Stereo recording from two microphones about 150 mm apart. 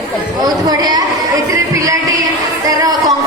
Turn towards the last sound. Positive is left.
turn(degrees=-25)  # may be behind; listen again after turning